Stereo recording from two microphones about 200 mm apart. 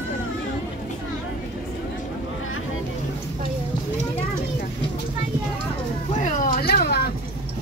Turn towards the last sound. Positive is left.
turn(degrees=50)  # may be behind; listen again after turning